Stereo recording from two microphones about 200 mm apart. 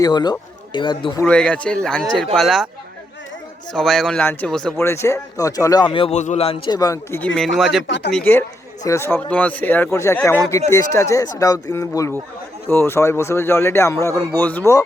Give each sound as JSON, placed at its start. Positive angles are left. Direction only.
{"t": 0.0, "sound": "speech", "side_deg": 20}
{"t": 1.2, "sound": "speech", "side_deg": 5}
{"t": 3.8, "sound": "speech", "side_deg": 0}
{"t": 7.3, "sound": "speech", "side_deg": 0}
{"t": 7.9, "sound": "speech", "side_deg": 65}
{"t": 8.1, "sound": "speech", "side_deg": 10}